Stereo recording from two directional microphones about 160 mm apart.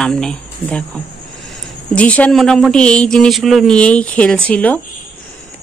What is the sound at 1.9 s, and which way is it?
Speech, 10° left (ahead or behind).